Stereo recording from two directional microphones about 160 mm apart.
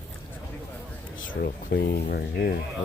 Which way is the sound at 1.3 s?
75° left (ahead or behind).